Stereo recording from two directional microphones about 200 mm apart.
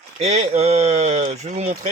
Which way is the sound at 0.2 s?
35° right (ahead or behind).